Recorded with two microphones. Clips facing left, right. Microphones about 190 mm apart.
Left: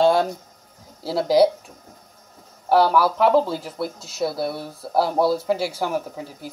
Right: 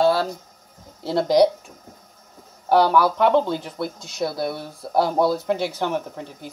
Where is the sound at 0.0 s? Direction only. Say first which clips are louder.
Left 2 dB; 20° left (ahead or behind).